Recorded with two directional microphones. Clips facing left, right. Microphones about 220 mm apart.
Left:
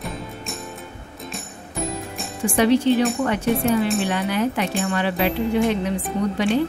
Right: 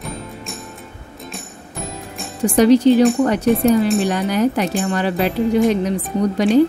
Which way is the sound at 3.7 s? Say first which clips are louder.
Right 4 dB; centre (ahead or behind).